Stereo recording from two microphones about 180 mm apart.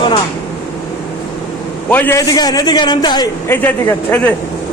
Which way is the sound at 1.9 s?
10° left (ahead or behind).